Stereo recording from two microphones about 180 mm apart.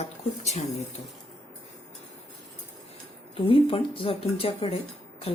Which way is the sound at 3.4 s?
30° left (ahead or behind).